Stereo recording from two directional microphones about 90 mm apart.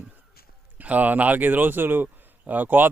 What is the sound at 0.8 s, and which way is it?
Speech, 20° right (ahead or behind).